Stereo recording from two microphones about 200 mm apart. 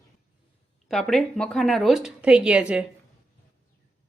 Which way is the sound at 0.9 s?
Centre (ahead or behind).